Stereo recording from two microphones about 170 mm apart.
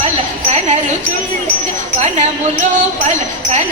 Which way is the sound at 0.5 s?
45° right (ahead or behind).